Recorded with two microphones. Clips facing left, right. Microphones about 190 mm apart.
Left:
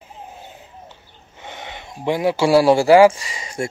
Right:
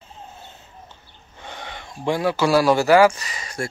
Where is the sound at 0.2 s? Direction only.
15° left (ahead or behind).